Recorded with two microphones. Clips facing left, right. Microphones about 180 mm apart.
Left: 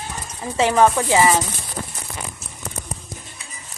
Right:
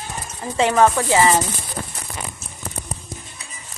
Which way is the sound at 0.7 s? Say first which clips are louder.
Even; 15° left (ahead or behind).